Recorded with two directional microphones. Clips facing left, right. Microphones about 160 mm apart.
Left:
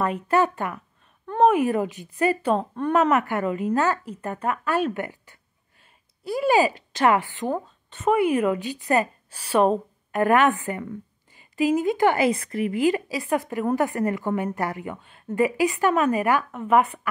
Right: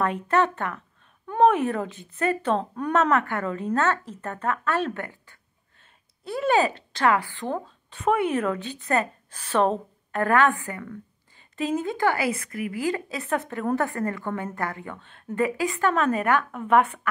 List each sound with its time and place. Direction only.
0.0 s a woman's voice: 5° left (ahead or behind)
7.5 s a woman's voice: centre (ahead or behind); by 11.4 s 20° left (ahead or behind)
11.5 s a woman's voice: 10° left (ahead or behind)